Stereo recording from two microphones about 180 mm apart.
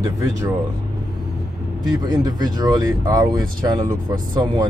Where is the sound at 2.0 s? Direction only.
20° right (ahead or behind).